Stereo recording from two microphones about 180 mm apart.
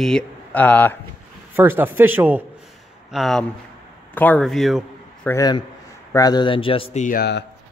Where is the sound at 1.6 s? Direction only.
10° right (ahead or behind).